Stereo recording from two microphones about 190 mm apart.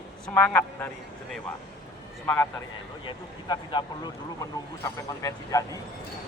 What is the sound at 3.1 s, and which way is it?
Speech, 25° left (ahead or behind).